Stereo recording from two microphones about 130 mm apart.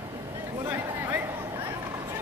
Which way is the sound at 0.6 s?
15° right (ahead or behind).